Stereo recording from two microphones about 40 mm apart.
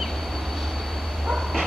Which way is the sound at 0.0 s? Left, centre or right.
Centre.